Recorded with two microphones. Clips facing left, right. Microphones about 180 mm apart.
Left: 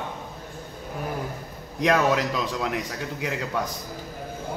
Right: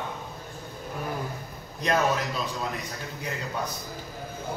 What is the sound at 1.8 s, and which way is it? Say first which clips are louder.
A man's voice: left 4 dB; 90° left.